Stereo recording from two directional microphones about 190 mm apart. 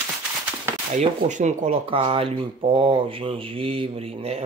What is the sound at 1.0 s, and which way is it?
Speech, 40° right (ahead or behind).